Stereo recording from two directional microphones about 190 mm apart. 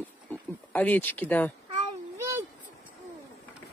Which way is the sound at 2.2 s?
15° right (ahead or behind).